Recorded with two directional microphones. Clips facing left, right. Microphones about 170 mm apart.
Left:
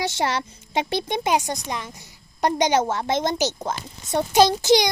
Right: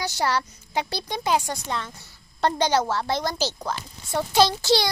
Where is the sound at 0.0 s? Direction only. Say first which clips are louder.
Left 1 dB; 25° left (ahead or behind).